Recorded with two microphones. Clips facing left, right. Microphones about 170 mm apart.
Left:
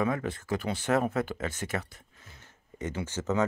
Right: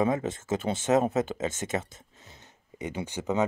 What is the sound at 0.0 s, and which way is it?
Speech, 20° right (ahead or behind).